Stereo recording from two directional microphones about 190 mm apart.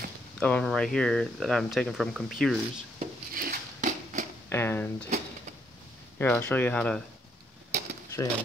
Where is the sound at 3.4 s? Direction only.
45° right (ahead or behind).